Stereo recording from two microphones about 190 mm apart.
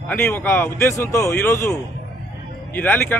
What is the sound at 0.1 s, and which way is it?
A man's voice, 10° left (ahead or behind).